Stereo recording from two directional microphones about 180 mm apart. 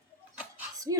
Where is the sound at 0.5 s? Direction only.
20° right (ahead or behind).